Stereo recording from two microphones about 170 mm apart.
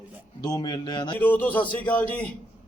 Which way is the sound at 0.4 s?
25° left (ahead or behind).